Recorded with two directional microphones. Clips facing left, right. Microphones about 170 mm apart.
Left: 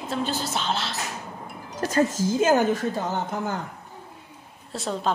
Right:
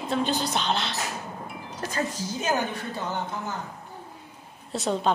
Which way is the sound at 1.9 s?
45° left (ahead or behind).